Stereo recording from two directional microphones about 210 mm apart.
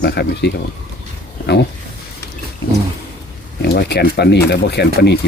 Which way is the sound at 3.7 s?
50° left (ahead or behind).